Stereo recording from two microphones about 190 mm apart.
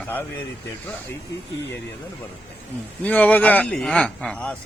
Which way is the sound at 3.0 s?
5° left (ahead or behind).